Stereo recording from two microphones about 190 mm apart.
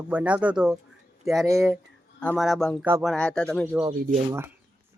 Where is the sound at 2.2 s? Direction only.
Centre (ahead or behind).